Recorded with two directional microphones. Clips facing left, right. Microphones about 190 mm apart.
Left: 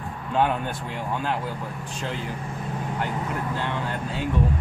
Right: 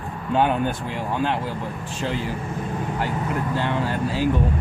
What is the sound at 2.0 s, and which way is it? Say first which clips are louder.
Speech: right 5 dB; centre (ahead or behind).